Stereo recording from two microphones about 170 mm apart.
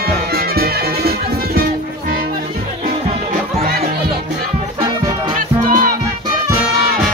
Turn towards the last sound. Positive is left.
turn(degrees=-50)  # may be behind; listen again after turning